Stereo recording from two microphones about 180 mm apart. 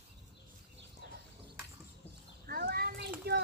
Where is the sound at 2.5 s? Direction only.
60° right (ahead or behind).